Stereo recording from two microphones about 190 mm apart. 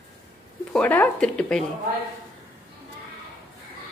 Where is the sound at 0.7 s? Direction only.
5° left (ahead or behind).